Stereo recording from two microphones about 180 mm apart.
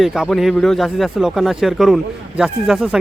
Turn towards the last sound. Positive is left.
turn(degrees=0)  # may be behind; listen again after turning